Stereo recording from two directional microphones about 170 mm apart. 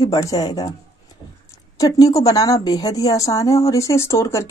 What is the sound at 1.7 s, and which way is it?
Speech, 20° left (ahead or behind).